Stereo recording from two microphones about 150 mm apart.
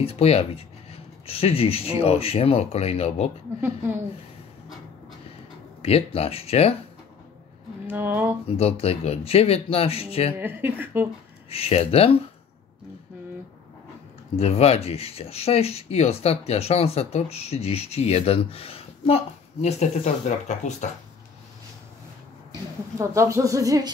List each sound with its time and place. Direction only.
0.0 s speech: 40° left (ahead or behind)
3.6 s speech: 15° right (ahead or behind)
5.8 s speech: 40° left (ahead or behind)
7.8 s speech: 15° right (ahead or behind)
8.5 s speech: 40° left (ahead or behind)
10.3 s speech: 15° right (ahead or behind)
11.4 s speech: 40° left (ahead or behind)
14.3 s speech: 45° left (ahead or behind)
22.5 s speech: 20° right (ahead or behind)